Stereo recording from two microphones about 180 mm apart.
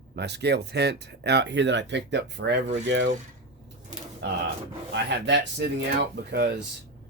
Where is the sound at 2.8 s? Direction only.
90° right.